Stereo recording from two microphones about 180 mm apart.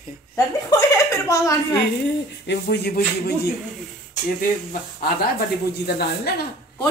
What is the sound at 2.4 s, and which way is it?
Speech, 65° left (ahead or behind).